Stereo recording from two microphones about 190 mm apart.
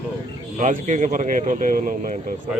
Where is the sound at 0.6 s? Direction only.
40° right (ahead or behind).